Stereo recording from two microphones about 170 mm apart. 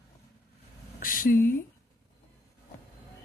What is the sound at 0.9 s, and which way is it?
Speech, 55° left (ahead or behind).